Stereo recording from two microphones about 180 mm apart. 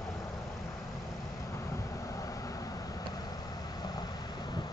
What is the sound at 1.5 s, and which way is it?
Vehicle, 15° left (ahead or behind).